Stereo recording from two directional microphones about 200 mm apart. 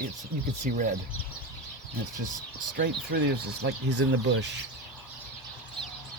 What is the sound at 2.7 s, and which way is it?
Speech, 50° right (ahead or behind).